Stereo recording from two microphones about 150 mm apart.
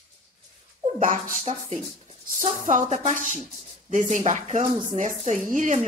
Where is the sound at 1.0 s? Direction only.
60° right (ahead or behind).